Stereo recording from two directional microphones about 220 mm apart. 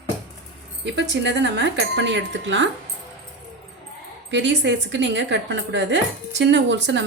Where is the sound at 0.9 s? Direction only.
50° right (ahead or behind).